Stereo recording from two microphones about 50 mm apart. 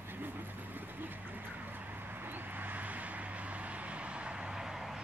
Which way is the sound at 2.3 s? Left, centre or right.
Right.